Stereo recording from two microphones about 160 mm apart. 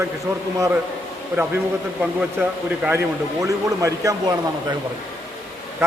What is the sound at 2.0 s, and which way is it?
A man's voice, 10° right (ahead or behind).